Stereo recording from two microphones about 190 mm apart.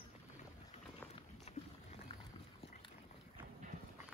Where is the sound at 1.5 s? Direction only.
35° left (ahead or behind).